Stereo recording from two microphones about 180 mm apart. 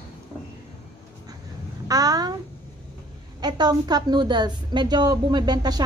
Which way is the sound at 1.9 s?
20° right (ahead or behind).